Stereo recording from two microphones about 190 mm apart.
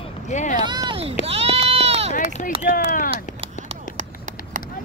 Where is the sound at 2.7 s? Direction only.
45° left (ahead or behind).